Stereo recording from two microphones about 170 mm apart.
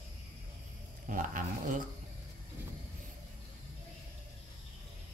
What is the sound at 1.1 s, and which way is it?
Speech, 50° right (ahead or behind).